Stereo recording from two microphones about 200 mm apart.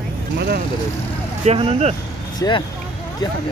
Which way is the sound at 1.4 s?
30° right (ahead or behind).